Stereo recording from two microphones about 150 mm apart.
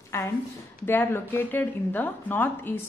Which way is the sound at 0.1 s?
15° left (ahead or behind).